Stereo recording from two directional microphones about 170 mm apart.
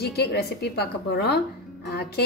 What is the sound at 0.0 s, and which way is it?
Speech, 70° left (ahead or behind).